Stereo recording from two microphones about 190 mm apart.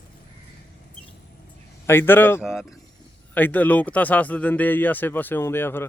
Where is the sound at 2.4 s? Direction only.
5° right (ahead or behind).